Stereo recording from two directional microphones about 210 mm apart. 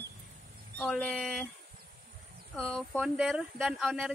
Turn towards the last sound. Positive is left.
turn(degrees=0)  # may be behind; listen again after turning